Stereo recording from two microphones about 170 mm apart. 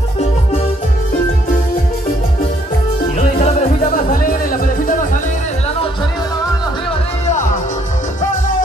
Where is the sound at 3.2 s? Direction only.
40° left (ahead or behind).